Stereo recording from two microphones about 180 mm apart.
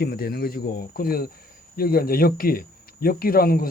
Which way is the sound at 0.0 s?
55° left (ahead or behind).